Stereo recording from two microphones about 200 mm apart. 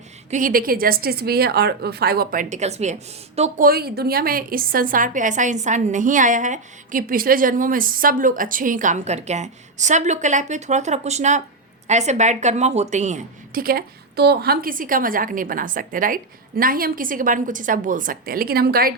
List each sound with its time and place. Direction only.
0.3 s a woman's voice: 40° right (ahead or behind)
3.7 s a woman's voice: 50° right (ahead or behind)